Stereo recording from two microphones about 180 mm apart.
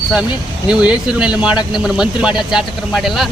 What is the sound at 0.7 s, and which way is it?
Speech, 5° right (ahead or behind).